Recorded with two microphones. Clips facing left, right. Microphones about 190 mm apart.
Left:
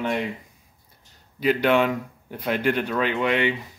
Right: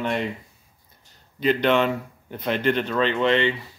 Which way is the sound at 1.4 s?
5° left (ahead or behind).